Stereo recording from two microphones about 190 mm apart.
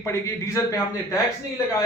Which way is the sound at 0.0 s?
15° left (ahead or behind).